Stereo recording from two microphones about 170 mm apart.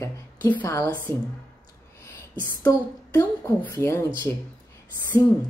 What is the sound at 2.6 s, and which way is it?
A woman's voice, 15° left (ahead or behind).